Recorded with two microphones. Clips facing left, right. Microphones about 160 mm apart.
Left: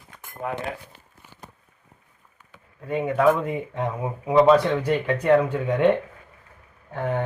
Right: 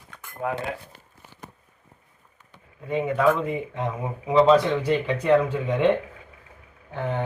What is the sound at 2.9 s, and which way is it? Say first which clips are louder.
Speech: left 1 dB; 10° left (ahead or behind).